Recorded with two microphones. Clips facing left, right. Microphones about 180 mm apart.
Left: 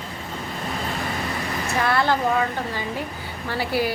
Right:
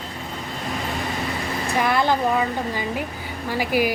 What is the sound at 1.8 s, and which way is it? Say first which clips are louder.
Speech: right 1 dB; 15° right (ahead or behind).